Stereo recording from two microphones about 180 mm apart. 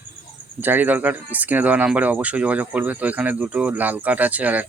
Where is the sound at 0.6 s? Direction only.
10° right (ahead or behind).